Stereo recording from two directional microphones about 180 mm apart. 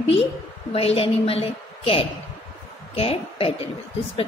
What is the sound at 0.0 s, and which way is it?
A woman's voice, 30° left (ahead or behind).